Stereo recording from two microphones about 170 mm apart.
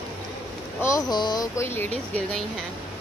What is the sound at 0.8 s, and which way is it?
Speech, 20° left (ahead or behind).